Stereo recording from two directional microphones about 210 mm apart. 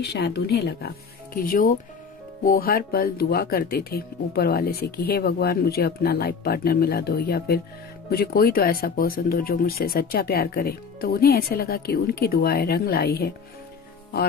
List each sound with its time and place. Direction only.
0.0 s speech: 50° left (ahead or behind)